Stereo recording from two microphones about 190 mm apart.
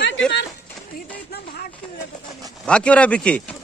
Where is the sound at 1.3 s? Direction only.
55° left (ahead or behind).